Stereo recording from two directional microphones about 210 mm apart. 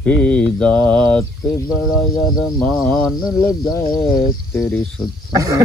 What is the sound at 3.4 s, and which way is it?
Speech, 20° left (ahead or behind).